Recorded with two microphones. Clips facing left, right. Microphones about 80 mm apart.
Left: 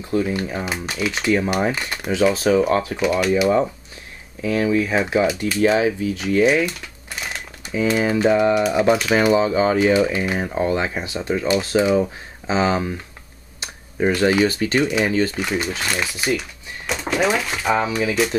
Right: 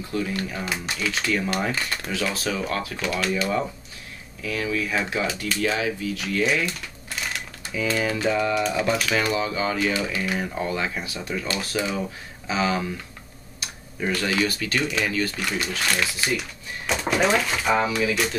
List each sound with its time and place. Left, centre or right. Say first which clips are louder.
0.1 s speech: left 6 dB; left
3.1 s speech: left 7 dB; centre
4.4 s speech: left 8 dB; left
7.7 s speech: left 6 dB; left
13.6 s a sound: left 8 dB; left
14.4 s speech: left 6 dB; left
14.8 s speech: left 6 dB; centre
15.0 s speech: left 6 dB; left
15.3 s speech: left 4 dB; centre
16.8 s a sound: left 2 dB; centre
17.7 s speech: left 2 dB; centre